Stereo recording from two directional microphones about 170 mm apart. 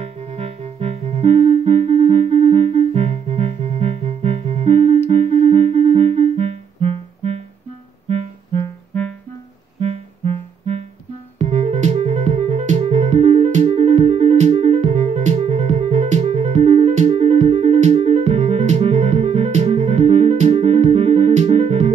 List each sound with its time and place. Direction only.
0.0 s music: 40° right (ahead or behind)
9.8 s music: 40° right (ahead or behind)